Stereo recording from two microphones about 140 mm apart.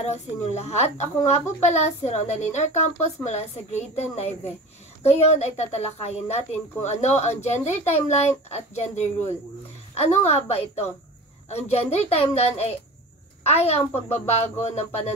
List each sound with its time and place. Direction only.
0.1 s a child's voice: 50° left (ahead or behind)